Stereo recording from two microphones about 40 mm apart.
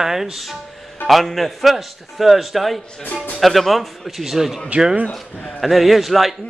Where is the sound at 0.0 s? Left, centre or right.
Centre.